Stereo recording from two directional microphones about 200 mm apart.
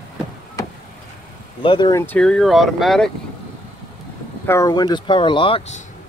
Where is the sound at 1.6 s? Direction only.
25° left (ahead or behind).